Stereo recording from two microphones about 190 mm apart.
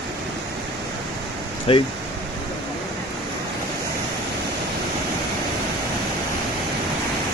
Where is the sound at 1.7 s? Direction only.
30° left (ahead or behind).